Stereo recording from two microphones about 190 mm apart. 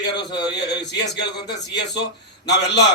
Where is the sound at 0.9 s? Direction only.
65° left (ahead or behind).